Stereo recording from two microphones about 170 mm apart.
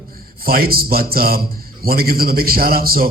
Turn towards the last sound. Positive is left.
turn(degrees=-60)  # may be behind; listen again after turning